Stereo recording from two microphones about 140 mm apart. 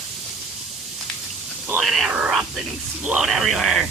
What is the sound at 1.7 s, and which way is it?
Whispering, centre (ahead or behind).